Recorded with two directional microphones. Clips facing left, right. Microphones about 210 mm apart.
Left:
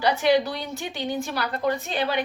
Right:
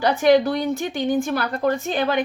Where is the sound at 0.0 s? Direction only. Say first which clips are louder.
Right 4 dB; 50° right (ahead or behind).